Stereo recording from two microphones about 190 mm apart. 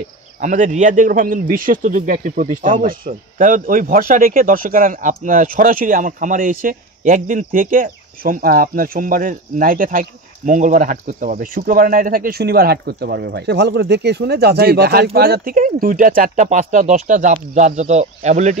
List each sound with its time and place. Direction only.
0.4 s a man's voice: 40° right (ahead or behind)